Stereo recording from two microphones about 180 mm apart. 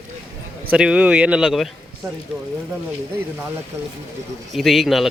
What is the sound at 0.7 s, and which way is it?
Speech, 5° right (ahead or behind).